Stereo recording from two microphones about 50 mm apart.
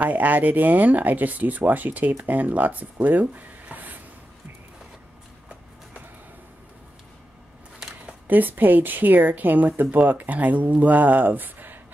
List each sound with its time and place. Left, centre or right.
0.0 s speech: right
8.3 s speech: right